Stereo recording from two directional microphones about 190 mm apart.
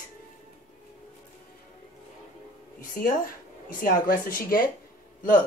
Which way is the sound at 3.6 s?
45° left (ahead or behind).